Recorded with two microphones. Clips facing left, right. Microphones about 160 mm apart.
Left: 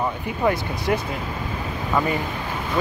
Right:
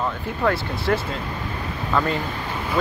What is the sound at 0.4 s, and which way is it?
Speech, 15° left (ahead or behind).